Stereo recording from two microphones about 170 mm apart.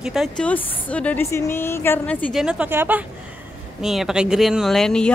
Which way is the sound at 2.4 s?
5° right (ahead or behind).